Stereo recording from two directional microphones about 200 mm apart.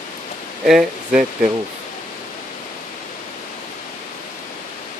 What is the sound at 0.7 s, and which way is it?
Speech, centre (ahead or behind).